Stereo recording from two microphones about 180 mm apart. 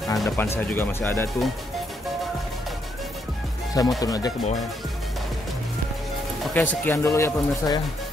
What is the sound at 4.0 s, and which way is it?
Speech, 20° left (ahead or behind).